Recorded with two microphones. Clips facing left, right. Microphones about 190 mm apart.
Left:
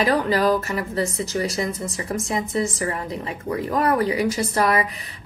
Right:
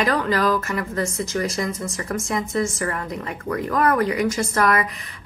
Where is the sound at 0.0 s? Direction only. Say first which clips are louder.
Left 1 dB; 30° left (ahead or behind).